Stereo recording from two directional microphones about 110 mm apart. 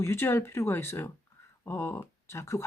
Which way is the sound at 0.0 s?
25° left (ahead or behind).